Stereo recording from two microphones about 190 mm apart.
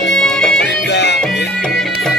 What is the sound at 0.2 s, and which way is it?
Music, 5° left (ahead or behind).